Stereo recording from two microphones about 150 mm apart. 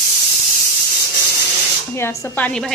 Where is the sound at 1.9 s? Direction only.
20° left (ahead or behind).